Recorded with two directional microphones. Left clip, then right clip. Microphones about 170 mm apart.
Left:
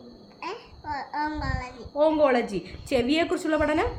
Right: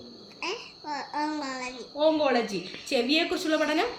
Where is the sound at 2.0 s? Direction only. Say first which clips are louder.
Left 3 dB; 40° left (ahead or behind).